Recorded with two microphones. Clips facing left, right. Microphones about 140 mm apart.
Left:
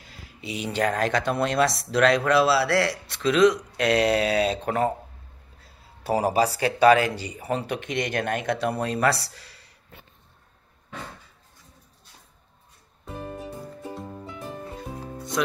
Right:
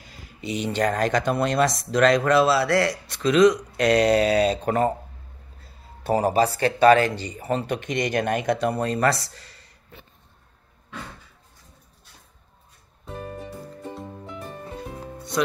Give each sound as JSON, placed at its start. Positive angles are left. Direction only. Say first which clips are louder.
{"t": 0.0, "sound": "speech", "louder": "right 4 dB", "side_deg": 0}
{"t": 13.9, "sound": "music", "louder": "even", "side_deg": 0}